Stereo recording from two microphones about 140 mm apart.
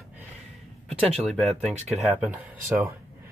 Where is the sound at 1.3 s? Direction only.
Centre (ahead or behind).